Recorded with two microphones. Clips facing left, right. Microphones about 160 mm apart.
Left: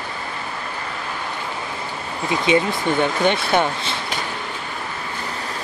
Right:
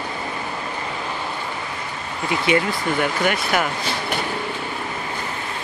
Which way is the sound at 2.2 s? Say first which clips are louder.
Left 2 dB; 25° left (ahead or behind).